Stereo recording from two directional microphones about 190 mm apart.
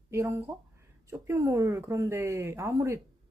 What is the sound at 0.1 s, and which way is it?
Speech, 15° right (ahead or behind).